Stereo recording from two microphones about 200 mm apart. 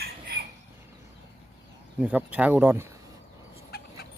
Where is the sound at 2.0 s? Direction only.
5° right (ahead or behind).